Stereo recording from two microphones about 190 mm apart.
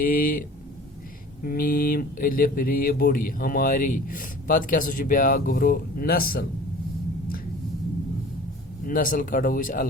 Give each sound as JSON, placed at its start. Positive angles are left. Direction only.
{"t": 0.0, "sound": "speech", "side_deg": 50}
{"t": 1.5, "sound": "speech", "side_deg": 50}
{"t": 8.9, "sound": "speech", "side_deg": 45}